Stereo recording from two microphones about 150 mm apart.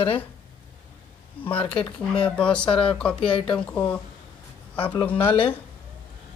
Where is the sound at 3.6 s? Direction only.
10° left (ahead or behind).